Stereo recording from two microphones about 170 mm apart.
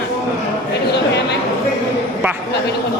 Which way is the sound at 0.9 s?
80° left.